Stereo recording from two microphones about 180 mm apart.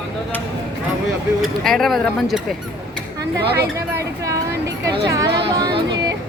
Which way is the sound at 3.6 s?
15° right (ahead or behind).